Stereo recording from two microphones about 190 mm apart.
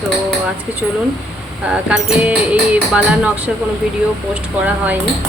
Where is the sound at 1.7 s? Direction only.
5° right (ahead or behind).